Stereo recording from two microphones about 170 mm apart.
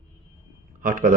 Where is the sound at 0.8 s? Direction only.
55° right (ahead or behind).